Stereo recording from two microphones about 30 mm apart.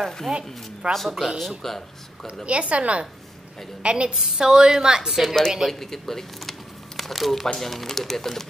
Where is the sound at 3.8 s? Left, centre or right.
Right.